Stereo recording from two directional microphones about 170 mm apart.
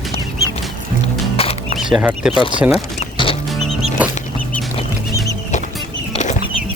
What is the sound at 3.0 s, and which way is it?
Music, 30° left (ahead or behind).